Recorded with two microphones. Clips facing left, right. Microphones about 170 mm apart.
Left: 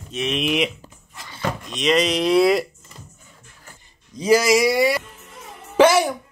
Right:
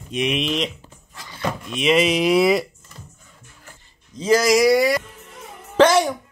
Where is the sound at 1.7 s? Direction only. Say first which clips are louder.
Right 2 dB; 5° right (ahead or behind).